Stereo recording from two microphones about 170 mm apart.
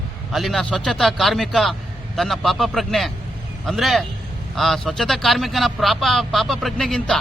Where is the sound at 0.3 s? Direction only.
Centre (ahead or behind).